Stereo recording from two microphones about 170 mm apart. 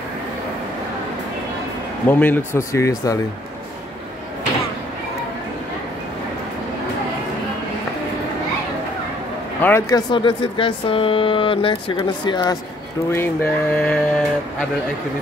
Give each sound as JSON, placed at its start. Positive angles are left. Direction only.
{"t": 2.0, "sound": "speech", "side_deg": 10}
{"t": 9.6, "sound": "speech", "side_deg": 15}
{"t": 10.1, "sound": "speech", "side_deg": 30}
{"t": 13.1, "sound": "speech", "side_deg": 15}